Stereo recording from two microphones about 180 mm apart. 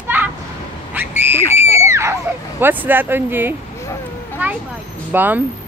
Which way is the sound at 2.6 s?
10° right (ahead or behind).